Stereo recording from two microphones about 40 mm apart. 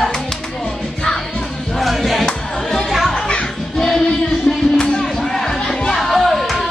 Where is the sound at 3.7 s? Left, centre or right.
Centre.